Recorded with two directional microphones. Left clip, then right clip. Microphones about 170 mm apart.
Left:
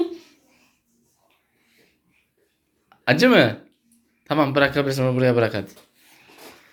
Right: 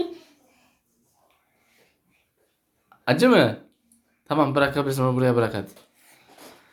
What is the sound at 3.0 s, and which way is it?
Speech, 5° right (ahead or behind).